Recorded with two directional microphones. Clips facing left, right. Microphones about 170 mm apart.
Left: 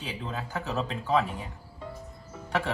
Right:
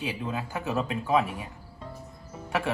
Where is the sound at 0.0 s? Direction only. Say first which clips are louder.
Right 4 dB; 15° right (ahead or behind).